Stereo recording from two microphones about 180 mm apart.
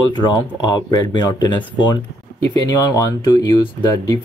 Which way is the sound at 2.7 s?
20° left (ahead or behind).